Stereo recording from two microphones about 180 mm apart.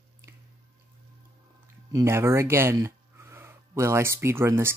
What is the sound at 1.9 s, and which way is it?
Speech, 15° right (ahead or behind).